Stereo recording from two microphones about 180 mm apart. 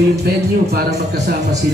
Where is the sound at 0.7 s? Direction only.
60° right (ahead or behind).